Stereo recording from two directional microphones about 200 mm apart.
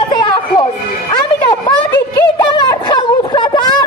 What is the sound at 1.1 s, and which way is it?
Music, 25° left (ahead or behind).